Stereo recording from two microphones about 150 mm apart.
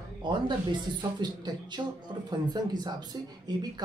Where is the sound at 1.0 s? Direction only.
30° right (ahead or behind).